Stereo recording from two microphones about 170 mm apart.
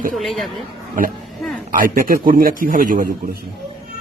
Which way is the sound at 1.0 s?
50° right (ahead or behind).